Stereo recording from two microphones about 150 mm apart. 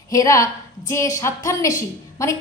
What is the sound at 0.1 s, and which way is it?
A woman's voice, 20° left (ahead or behind).